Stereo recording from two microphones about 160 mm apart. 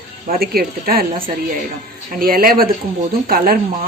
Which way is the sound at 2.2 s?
65° right (ahead or behind).